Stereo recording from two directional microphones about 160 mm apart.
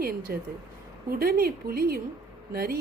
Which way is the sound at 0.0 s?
65° right (ahead or behind).